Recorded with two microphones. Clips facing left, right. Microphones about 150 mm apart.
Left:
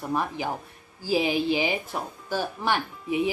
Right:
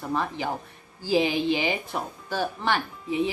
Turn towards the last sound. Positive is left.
turn(degrees=10)  # may be behind; listen again after turning